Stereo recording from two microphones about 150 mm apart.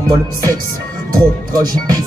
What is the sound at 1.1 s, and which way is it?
Music, 25° right (ahead or behind).